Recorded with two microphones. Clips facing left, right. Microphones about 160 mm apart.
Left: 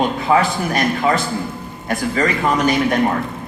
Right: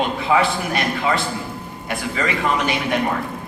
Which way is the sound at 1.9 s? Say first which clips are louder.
Left 5 dB; 45° left (ahead or behind).